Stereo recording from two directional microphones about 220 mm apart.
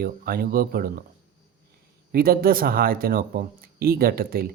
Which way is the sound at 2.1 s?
40° right (ahead or behind).